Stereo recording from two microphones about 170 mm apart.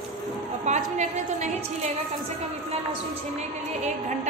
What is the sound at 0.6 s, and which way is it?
Speech, 45° right (ahead or behind).